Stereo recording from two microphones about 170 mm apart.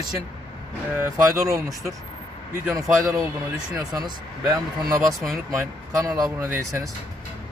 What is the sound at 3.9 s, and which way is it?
Speech, 20° right (ahead or behind).